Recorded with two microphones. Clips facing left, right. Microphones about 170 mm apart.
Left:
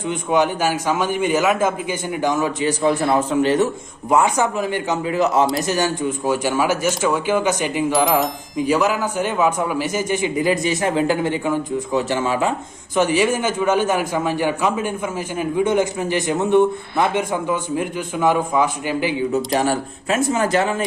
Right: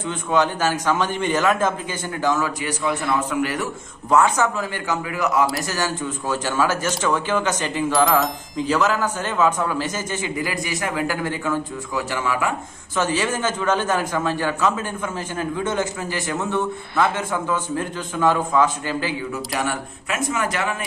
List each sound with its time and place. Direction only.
0.0 s a man's voice: 15° left (ahead or behind)
13.0 s a man's voice: 15° left (ahead or behind)
19.5 s speech: 30° left (ahead or behind)